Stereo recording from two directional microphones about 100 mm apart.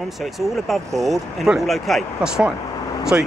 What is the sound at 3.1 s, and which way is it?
Speech, 20° right (ahead or behind).